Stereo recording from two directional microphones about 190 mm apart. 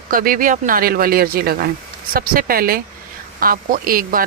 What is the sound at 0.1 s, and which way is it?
Speech, 45° right (ahead or behind).